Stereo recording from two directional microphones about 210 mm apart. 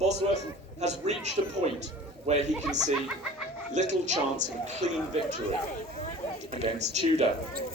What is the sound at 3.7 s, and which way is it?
Speech, 35° right (ahead or behind).